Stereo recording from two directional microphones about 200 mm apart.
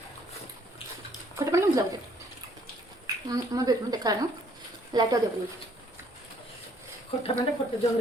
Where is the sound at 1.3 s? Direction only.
15° right (ahead or behind).